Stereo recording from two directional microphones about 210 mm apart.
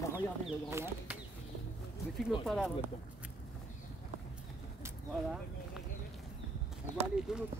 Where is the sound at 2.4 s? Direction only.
Centre (ahead or behind).